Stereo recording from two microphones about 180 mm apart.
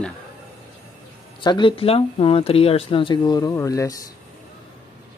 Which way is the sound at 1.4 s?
25° left (ahead or behind).